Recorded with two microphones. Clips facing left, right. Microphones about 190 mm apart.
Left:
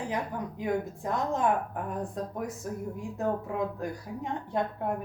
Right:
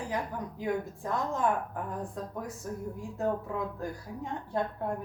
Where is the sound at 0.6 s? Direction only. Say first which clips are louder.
Left 2 dB; 20° left (ahead or behind).